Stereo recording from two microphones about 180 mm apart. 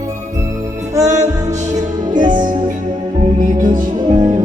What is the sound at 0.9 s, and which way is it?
Music, 20° right (ahead or behind).